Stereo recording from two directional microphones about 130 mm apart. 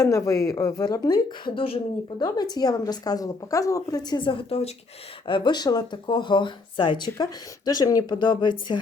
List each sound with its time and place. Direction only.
0.0 s a woman's voice: 25° left (ahead or behind); by 2.2 s 45° left (ahead or behind)
2.2 s speech: 30° left (ahead or behind); by 4.7 s 50° left (ahead or behind)
5.2 s speech: 40° left (ahead or behind)